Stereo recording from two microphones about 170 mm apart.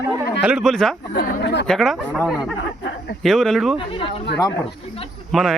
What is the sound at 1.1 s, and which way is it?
Speech, 70° left (ahead or behind).